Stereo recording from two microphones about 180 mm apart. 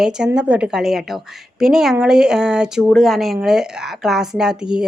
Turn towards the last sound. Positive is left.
turn(degrees=-5)  # may be behind; listen again after turning